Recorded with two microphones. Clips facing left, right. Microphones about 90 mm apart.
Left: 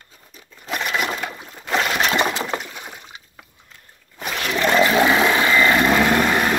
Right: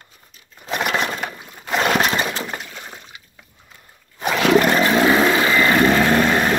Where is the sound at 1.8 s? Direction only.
35° right (ahead or behind).